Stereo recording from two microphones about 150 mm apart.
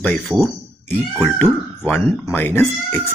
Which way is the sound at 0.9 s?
10° left (ahead or behind).